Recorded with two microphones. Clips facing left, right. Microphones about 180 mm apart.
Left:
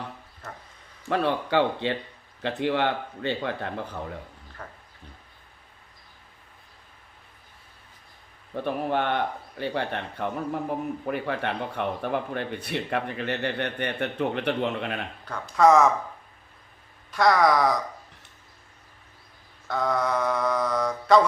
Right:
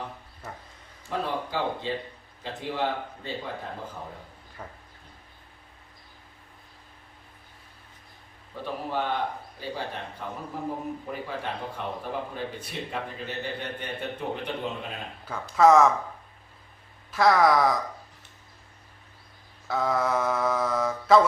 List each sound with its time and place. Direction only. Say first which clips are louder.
1.0 s speech: left 5 dB; 70° left (ahead or behind)
4.6 s speech: even; 10° right (ahead or behind)
8.6 s a man's voice: left 4 dB; 65° left (ahead or behind)
15.2 s mantra: even; 5° right (ahead or behind)
17.1 s mantra: even; centre (ahead or behind)
19.6 s mantra: even; centre (ahead or behind)